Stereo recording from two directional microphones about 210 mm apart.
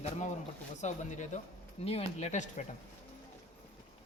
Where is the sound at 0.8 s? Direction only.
35° left (ahead or behind).